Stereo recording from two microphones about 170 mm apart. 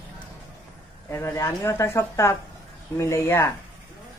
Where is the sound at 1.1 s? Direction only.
15° left (ahead or behind).